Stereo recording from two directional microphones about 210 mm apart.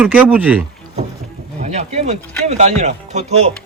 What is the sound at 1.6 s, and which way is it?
Speech, 35° right (ahead or behind).